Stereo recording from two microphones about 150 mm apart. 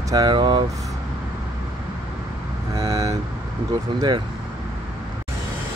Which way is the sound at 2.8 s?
25° right (ahead or behind).